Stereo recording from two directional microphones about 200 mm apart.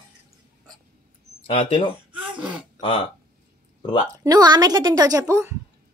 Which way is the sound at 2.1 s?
5° right (ahead or behind).